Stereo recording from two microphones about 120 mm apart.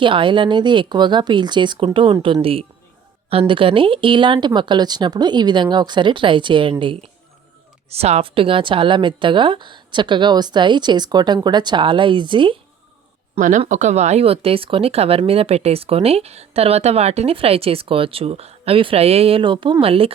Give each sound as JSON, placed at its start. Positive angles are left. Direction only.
{"t": 0.0, "sound": "speech", "side_deg": -45}
{"t": 7.9, "sound": "speech", "side_deg": -60}
{"t": 13.7, "sound": "speech", "side_deg": -85}